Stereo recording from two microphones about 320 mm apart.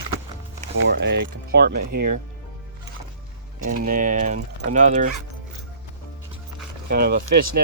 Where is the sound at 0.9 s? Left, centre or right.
Right.